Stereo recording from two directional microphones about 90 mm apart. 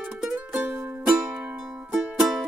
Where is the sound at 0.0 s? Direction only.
10° right (ahead or behind).